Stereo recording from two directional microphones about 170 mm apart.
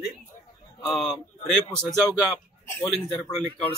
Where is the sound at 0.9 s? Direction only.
Centre (ahead or behind).